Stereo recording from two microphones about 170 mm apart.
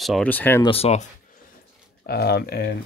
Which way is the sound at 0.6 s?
35° left (ahead or behind).